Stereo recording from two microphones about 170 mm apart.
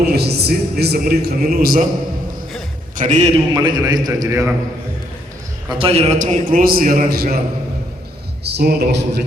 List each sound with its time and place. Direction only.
0.1 s a man's voice: 70° right (ahead or behind)
2.9 s a man's voice: 50° right (ahead or behind)
3.5 s a man's voice: 25° right (ahead or behind)
5.6 s a man's voice: 30° right (ahead or behind)
6.1 s a man's voice: 50° right (ahead or behind)
8.4 s a man's voice: 70° right (ahead or behind)